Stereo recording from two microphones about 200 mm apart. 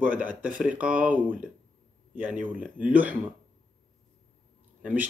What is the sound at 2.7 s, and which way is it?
Speech, 10° right (ahead or behind).